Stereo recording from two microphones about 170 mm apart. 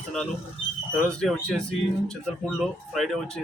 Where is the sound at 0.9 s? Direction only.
5° left (ahead or behind).